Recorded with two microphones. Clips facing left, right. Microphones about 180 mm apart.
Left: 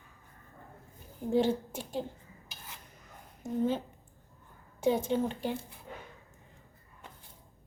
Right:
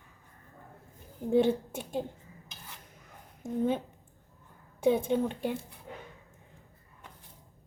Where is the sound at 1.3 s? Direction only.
55° right (ahead or behind).